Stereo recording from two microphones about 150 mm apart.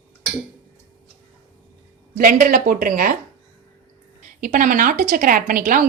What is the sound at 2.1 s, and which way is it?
Speech, 70° right (ahead or behind).